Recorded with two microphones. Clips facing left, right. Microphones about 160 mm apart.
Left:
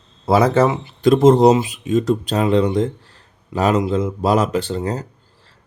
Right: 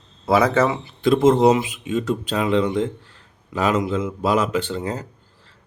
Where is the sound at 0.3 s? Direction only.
30° left (ahead or behind).